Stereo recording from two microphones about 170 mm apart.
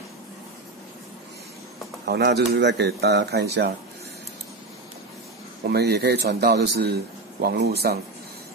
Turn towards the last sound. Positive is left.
turn(degrees=-70)  # may be behind; listen again after turning